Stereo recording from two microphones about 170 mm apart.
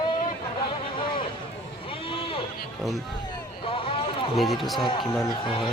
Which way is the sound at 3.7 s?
30° left (ahead or behind).